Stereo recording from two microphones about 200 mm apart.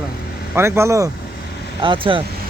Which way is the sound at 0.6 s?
15° right (ahead or behind).